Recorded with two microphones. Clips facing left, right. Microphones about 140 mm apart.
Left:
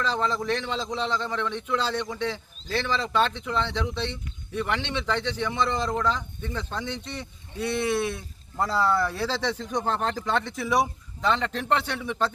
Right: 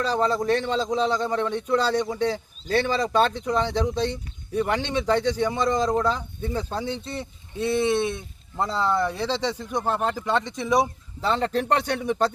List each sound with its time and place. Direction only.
0.0 s a man's voice: 40° right (ahead or behind); by 10.8 s 20° right (ahead or behind)
11.2 s a man's voice: 35° right (ahead or behind)